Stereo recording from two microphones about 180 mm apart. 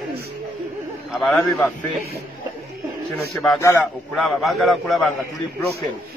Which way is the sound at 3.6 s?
15° left (ahead or behind).